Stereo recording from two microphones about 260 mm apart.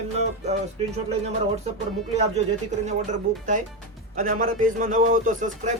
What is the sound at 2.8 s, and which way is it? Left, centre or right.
A man's voice, right.